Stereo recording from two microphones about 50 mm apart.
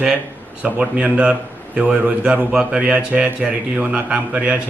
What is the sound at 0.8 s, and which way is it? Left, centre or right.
A man's voice, right.